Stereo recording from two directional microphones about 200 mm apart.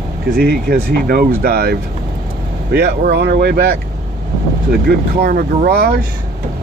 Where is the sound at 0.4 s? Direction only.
55° right (ahead or behind).